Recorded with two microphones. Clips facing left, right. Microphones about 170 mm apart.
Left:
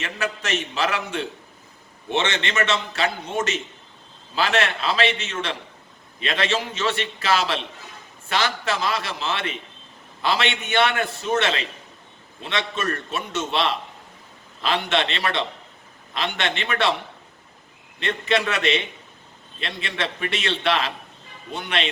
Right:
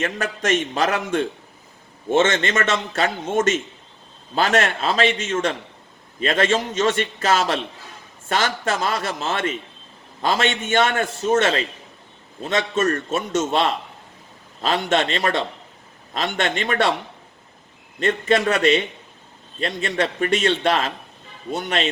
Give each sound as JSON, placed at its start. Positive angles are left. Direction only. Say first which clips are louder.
{"t": 0.0, "sound": "a man's voice", "louder": "right 4 dB", "side_deg": -45}
{"t": 18.0, "sound": "a man's voice", "louder": "right 4 dB", "side_deg": -45}